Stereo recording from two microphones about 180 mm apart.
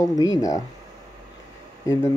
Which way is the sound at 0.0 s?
20° left (ahead or behind).